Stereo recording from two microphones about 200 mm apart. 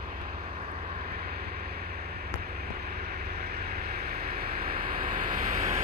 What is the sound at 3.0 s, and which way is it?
Vehicle, 50° right (ahead or behind).